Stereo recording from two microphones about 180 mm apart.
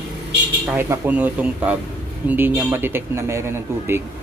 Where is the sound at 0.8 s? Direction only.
10° right (ahead or behind).